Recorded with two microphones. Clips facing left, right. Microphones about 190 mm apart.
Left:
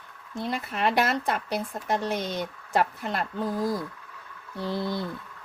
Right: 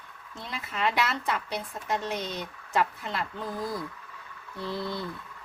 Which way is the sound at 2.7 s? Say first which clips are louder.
Left 2 dB; 45° left (ahead or behind).